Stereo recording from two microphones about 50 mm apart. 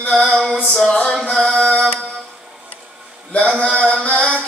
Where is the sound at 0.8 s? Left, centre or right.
Left.